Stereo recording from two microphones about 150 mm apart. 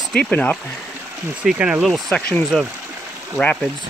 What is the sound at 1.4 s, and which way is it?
Speech, 5° right (ahead or behind).